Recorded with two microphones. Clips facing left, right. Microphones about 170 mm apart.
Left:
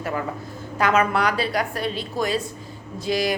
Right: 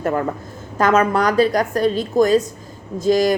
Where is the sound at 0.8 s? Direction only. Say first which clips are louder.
Right 4 dB; 45° right (ahead or behind).